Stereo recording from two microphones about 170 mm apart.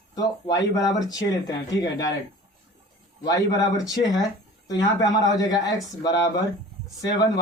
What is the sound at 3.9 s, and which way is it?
A man's voice, 20° left (ahead or behind).